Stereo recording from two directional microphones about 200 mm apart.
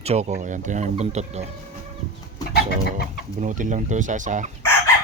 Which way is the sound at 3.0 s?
40° right (ahead or behind).